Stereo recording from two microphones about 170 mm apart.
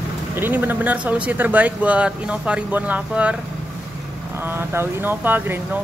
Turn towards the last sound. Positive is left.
turn(degrees=-10)  # may be behind; listen again after turning